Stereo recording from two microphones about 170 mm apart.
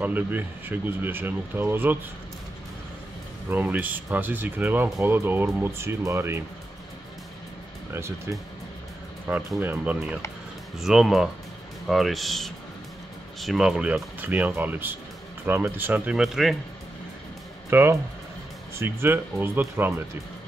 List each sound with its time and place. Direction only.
0.0 s speech: 10° right (ahead or behind)
3.4 s speech: 10° right (ahead or behind)
7.9 s speech: 15° right (ahead or behind)
17.6 s speech: 15° right (ahead or behind)